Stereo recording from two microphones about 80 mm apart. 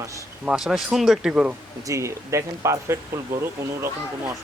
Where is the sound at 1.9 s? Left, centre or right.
Right.